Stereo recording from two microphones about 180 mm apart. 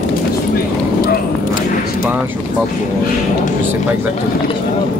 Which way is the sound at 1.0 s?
55° left (ahead or behind).